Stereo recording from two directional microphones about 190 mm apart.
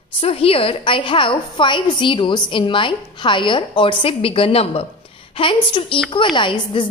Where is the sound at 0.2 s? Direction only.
30° left (ahead or behind).